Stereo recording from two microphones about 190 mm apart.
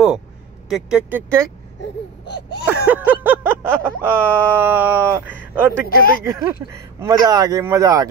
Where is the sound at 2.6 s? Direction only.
10° right (ahead or behind).